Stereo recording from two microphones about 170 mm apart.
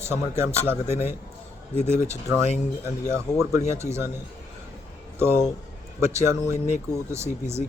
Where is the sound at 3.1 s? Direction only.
15° right (ahead or behind).